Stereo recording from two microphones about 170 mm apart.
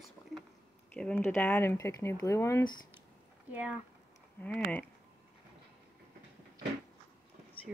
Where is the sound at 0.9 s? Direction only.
10° left (ahead or behind).